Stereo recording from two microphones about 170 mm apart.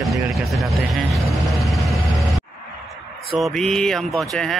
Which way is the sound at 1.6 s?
Centre (ahead or behind).